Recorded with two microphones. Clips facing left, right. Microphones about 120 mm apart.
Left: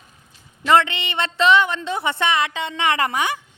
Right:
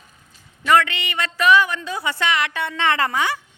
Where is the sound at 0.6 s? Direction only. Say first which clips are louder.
Left 1 dB; 25° left (ahead or behind).